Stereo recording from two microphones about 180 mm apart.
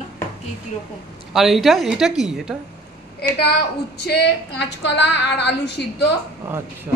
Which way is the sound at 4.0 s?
70° left (ahead or behind).